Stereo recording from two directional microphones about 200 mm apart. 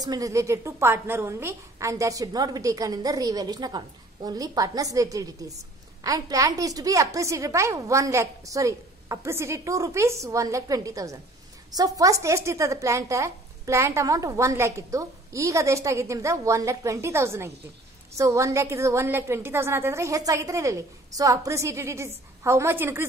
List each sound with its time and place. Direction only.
0.0 s a woman's voice: 20° right (ahead or behind)